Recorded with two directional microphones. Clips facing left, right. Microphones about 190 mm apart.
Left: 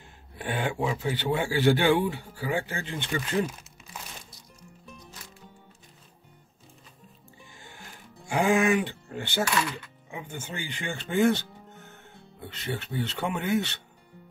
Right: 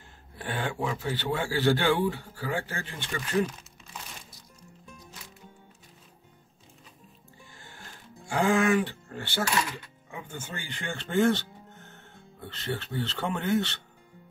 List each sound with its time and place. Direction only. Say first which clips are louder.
0.4 s speech: left 3 dB; 15° left (ahead or behind)
7.5 s music: left 1 dB; 15° left (ahead or behind)
10.1 s speech: left 2 dB; 15° left (ahead or behind)